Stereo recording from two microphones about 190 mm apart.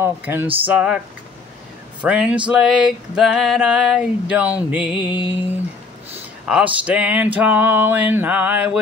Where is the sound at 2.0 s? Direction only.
5° right (ahead or behind).